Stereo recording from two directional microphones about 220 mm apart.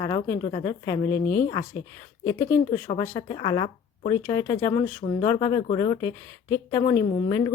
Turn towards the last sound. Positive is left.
turn(degrees=15)  # may be behind; listen again after turning